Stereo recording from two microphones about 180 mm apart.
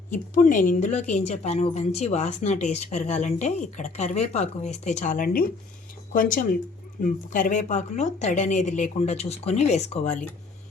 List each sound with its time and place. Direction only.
0.1 s speech: 45° left (ahead or behind)